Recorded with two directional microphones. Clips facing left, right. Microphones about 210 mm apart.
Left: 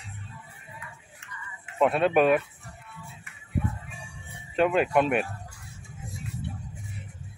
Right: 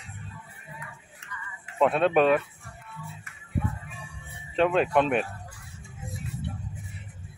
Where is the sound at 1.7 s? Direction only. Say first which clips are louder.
Even; 5° left (ahead or behind).